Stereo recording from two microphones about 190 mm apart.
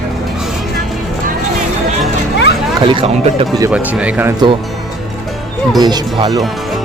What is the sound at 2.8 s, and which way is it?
Speech, 25° right (ahead or behind).